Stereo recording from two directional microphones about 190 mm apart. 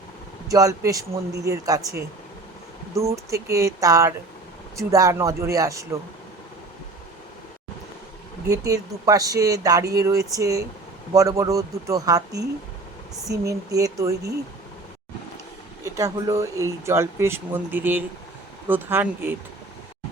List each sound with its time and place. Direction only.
0.4 s speech: 20° right (ahead or behind)
8.4 s speech: 20° right (ahead or behind)
15.8 s speech: 15° right (ahead or behind)